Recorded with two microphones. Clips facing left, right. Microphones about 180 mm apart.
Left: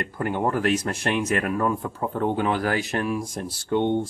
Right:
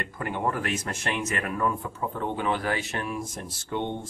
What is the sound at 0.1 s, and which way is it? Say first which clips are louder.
Speech: left 4 dB; 35° left (ahead or behind).